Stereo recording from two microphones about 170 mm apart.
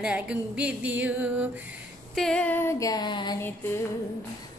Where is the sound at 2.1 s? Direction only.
5° left (ahead or behind); by 3.4 s 25° left (ahead or behind).